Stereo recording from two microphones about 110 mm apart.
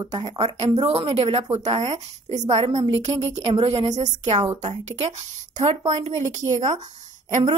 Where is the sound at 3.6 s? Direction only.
70° right (ahead or behind).